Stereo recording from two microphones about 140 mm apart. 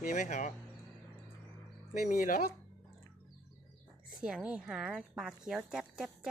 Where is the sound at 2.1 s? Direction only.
70° left (ahead or behind).